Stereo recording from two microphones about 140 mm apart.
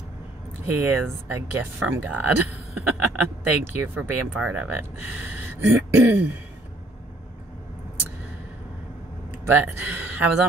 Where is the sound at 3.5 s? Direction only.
15° right (ahead or behind).